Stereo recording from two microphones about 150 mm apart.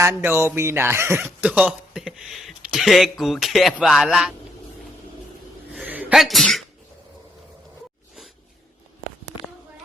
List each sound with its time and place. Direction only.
0.0 s a man's voice: 15° right (ahead or behind)
5.7 s sneeze: 10° right (ahead or behind)